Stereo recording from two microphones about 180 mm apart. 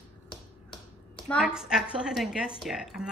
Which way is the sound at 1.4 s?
5° right (ahead or behind).